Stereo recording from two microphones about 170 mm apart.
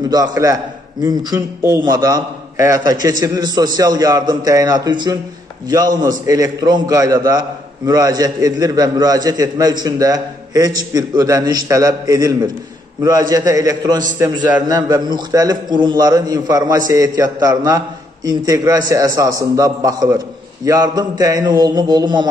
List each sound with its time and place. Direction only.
0.1 s a man's voice: 20° right (ahead or behind)